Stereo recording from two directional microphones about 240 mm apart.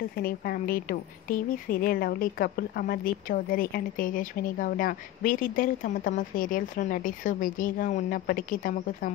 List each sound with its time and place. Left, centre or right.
0.1 s a woman's voice: left